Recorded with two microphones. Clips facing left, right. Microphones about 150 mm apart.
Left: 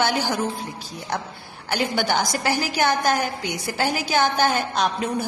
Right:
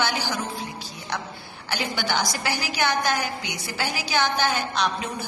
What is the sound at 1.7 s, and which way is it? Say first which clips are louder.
A woman's voice: left 4 dB; 45° left (ahead or behind).